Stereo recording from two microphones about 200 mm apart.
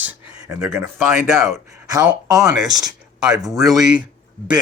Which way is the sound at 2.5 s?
Centre (ahead or behind).